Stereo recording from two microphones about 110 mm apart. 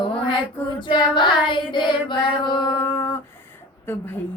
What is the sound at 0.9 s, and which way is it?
Child singing, 45° left (ahead or behind).